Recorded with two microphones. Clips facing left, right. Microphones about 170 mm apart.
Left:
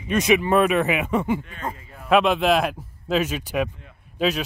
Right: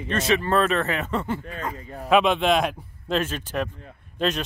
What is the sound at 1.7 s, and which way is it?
Speech, 40° right (ahead or behind).